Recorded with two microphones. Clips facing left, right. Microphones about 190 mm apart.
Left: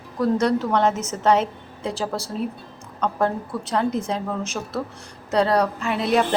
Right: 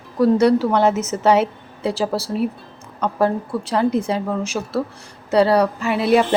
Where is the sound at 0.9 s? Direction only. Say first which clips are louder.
Right 6 dB; 65° right (ahead or behind).